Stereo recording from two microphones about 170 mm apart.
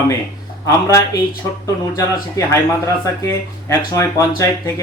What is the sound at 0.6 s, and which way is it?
Speech, 15° left (ahead or behind).